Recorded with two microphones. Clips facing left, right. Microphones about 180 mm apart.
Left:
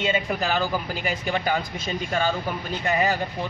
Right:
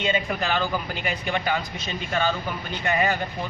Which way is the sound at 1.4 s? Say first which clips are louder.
Left 1 dB; 45° left (ahead or behind).